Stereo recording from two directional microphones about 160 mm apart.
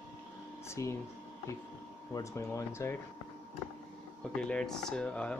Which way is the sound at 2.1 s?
20° left (ahead or behind).